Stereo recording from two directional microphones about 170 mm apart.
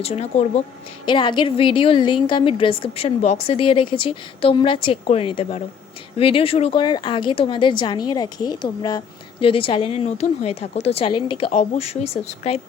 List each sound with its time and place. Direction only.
0.0 s a woman's voice: 40° left (ahead or behind)
1.0 s a woman's voice: 30° left (ahead or behind)